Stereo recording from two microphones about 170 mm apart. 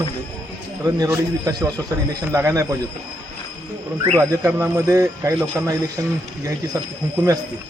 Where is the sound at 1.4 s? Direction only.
20° right (ahead or behind).